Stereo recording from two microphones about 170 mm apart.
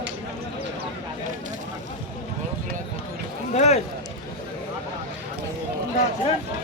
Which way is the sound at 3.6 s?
40° left (ahead or behind).